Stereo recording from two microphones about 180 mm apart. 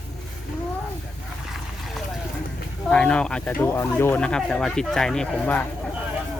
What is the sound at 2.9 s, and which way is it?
Speech, 5° left (ahead or behind).